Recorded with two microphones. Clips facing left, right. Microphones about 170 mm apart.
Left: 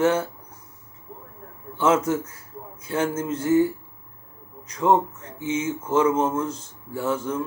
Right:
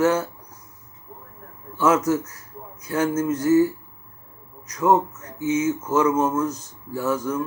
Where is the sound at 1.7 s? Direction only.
25° left (ahead or behind).